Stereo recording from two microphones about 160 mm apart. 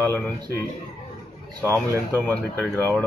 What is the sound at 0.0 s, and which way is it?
Speech, 15° left (ahead or behind).